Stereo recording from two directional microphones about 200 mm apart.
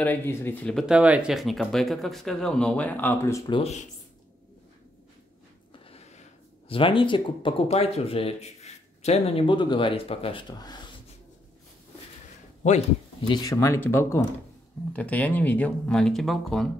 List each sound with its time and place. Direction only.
0.0 s speech: 10° left (ahead or behind); by 3.8 s 30° left (ahead or behind)
5.7 s a sound: 30° left (ahead or behind)
6.7 s speech: 25° left (ahead or behind)
13.3 s speech: 20° left (ahead or behind); by 16.6 s centre (ahead or behind)